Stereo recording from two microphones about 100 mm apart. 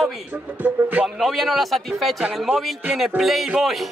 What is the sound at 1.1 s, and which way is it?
Speech, centre (ahead or behind).